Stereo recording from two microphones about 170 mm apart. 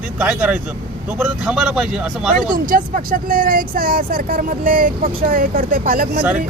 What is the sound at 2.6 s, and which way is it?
Speech, 55° right (ahead or behind).